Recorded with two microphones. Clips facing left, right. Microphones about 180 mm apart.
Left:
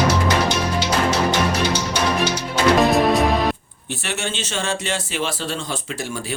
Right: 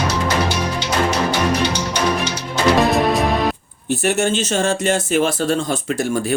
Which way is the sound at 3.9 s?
45° right (ahead or behind).